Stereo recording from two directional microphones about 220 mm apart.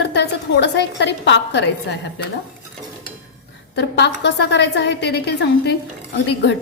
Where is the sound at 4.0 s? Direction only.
50° left (ahead or behind).